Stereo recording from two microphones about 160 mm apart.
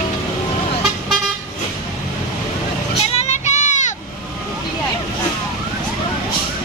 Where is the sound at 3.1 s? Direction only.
45° left (ahead or behind).